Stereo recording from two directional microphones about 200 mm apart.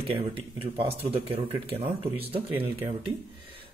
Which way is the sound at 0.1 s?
30° right (ahead or behind).